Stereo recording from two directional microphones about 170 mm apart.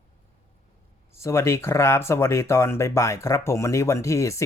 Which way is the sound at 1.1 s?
15° left (ahead or behind).